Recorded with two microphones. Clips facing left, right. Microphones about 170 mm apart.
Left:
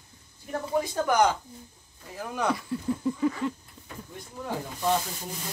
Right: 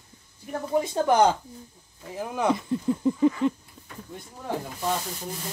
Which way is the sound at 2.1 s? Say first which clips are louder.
Right 3 dB; 20° right (ahead or behind).